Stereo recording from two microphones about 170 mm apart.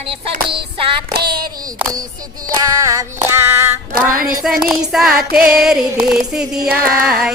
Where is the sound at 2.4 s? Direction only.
20° right (ahead or behind).